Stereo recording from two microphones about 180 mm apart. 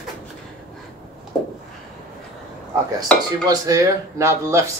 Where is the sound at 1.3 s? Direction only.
5° left (ahead or behind).